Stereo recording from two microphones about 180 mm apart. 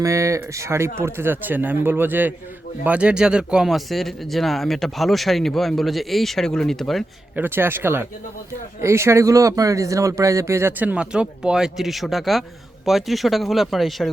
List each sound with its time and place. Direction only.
0.0 s speech: 15° right (ahead or behind); by 7.4 s centre (ahead or behind)
7.4 s speech: 10° right (ahead or behind)